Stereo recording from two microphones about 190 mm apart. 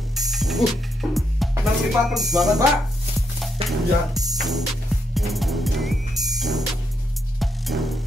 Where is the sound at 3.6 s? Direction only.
30° right (ahead or behind).